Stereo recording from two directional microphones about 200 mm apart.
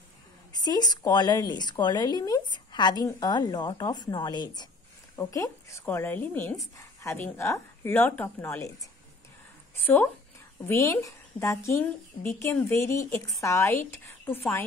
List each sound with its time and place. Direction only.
0.6 s a woman's voice: 20° left (ahead or behind)
10.7 s speech: 15° left (ahead or behind)